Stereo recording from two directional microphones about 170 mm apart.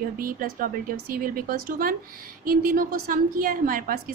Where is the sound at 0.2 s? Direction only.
55° right (ahead or behind).